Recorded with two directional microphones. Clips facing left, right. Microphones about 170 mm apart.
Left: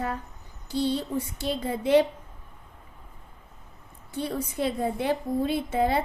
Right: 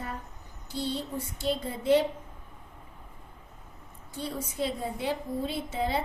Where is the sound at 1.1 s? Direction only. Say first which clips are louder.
Left 2 dB; 70° left (ahead or behind).